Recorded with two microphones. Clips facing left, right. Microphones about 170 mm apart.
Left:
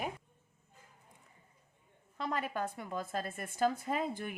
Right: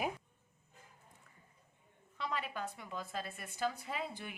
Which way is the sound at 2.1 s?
45° left (ahead or behind).